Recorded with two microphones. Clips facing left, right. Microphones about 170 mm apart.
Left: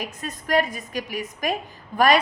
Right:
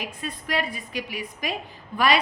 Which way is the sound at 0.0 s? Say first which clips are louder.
Left 1 dB; 45° left (ahead or behind).